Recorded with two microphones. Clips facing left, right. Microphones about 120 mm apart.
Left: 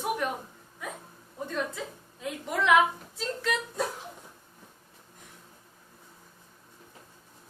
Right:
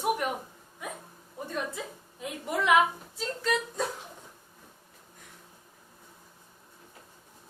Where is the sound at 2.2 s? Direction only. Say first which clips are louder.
Left 1 dB; 5° right (ahead or behind).